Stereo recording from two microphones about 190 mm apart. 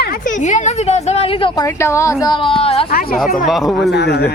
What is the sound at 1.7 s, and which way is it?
Speech, 15° left (ahead or behind).